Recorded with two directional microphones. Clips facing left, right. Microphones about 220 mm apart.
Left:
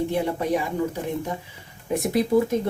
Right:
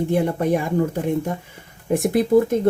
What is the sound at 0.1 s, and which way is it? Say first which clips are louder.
Speech: right 4 dB; 50° right (ahead or behind).